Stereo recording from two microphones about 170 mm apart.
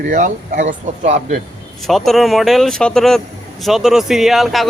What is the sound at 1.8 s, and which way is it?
Speech, centre (ahead or behind).